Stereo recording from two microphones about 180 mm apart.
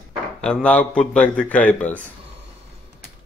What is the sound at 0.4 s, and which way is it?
Speech, 5° left (ahead or behind).